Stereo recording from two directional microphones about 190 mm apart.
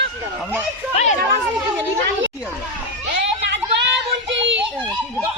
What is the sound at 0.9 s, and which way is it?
Speech, 35° left (ahead or behind).